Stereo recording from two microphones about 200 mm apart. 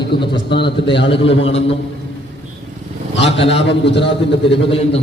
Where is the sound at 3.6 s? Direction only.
60° left (ahead or behind).